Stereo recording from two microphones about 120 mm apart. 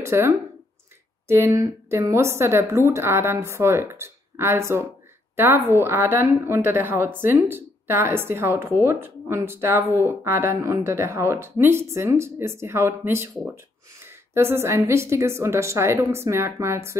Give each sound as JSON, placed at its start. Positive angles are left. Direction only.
{"t": 0.0, "sound": "a woman's voice", "side_deg": -20}
{"t": 14.3, "sound": "a woman's voice", "side_deg": -20}